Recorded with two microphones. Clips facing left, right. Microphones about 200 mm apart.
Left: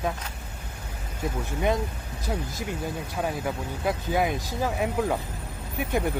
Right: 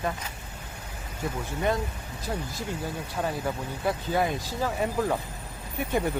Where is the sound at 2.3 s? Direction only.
5° left (ahead or behind).